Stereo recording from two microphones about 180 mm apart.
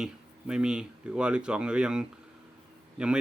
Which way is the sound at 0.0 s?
5° right (ahead or behind).